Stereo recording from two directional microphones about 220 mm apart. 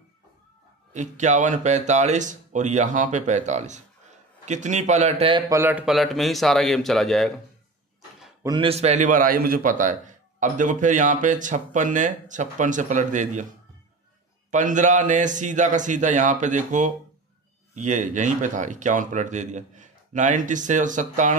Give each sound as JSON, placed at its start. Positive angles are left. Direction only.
{"t": 0.9, "sound": "a man's voice", "side_deg": -35}
{"t": 5.5, "sound": "speech", "side_deg": -10}
{"t": 8.4, "sound": "a man's voice", "side_deg": -20}
{"t": 14.5, "sound": "a man's voice", "side_deg": -35}